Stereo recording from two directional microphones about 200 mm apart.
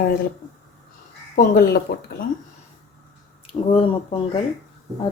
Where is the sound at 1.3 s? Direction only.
45° left (ahead or behind).